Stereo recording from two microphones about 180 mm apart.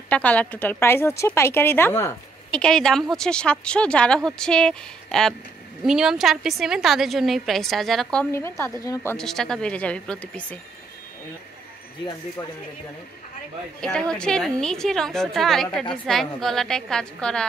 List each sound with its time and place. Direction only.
0.1 s a woman's voice: 10° left (ahead or behind)
8.3 s speech: 15° left (ahead or behind)
9.1 s speech: centre (ahead or behind)
13.7 s a woman's voice: 5° left (ahead or behind)